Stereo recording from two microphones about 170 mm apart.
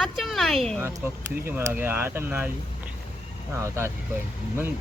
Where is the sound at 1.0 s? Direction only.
10° right (ahead or behind).